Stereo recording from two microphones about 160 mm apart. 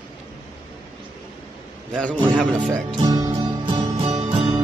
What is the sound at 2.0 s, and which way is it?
Speech, 5° left (ahead or behind).